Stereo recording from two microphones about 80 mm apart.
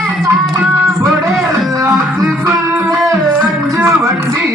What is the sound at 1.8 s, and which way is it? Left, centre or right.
Music, right.